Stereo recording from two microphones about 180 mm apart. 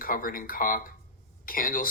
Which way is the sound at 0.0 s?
50° left (ahead or behind).